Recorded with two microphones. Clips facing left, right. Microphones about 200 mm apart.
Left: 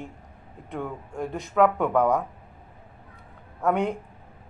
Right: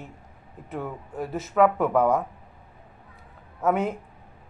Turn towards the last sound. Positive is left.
turn(degrees=-5)  # may be behind; listen again after turning